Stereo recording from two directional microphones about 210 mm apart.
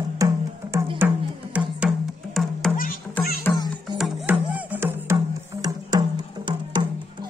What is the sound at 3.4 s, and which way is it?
Music, 20° left (ahead or behind).